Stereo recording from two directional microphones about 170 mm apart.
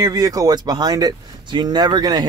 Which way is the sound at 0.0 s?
20° right (ahead or behind).